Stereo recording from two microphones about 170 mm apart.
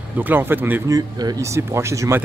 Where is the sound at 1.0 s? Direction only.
25° right (ahead or behind).